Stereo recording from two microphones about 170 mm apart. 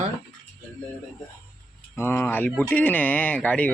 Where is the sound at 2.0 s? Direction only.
10° left (ahead or behind).